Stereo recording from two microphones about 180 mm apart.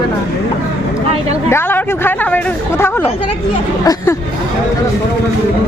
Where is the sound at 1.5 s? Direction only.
10° left (ahead or behind).